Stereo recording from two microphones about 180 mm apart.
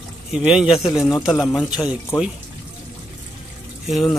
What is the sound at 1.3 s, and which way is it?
Speech, 20° left (ahead or behind).